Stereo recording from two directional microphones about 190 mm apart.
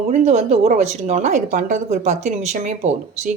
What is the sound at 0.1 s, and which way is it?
Speech, 35° right (ahead or behind).